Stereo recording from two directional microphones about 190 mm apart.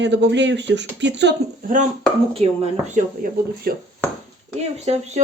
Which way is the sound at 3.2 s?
50° right (ahead or behind).